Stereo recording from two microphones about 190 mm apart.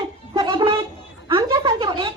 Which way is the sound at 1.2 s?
20° right (ahead or behind).